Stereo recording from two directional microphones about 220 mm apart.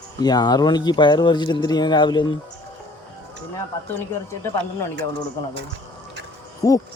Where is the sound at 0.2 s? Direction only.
20° left (ahead or behind).